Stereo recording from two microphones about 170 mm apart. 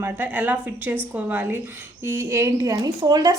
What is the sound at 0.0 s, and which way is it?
A woman's voice, 10° right (ahead or behind).